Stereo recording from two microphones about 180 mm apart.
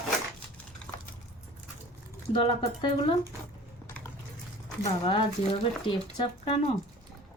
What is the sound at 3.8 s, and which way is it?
Liquid, 10° left (ahead or behind).